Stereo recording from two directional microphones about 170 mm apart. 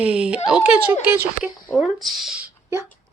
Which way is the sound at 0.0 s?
5° right (ahead or behind).